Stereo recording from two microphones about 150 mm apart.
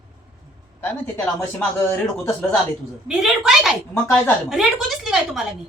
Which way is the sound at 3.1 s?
5° right (ahead or behind).